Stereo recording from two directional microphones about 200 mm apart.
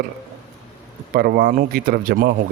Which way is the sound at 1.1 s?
45° right (ahead or behind).